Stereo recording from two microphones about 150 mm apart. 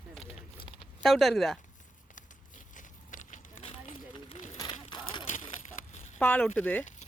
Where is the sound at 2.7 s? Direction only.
60° left (ahead or behind).